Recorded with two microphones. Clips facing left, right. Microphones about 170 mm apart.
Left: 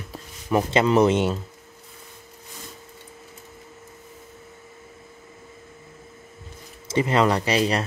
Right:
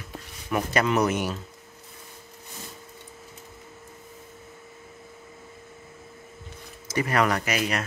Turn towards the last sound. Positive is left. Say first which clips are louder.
# left 5 dB
turn(degrees=30)  # may be behind; listen again after turning